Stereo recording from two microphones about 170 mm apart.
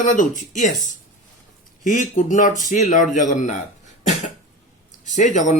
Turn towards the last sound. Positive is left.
turn(degrees=45)  # may be behind; listen again after turning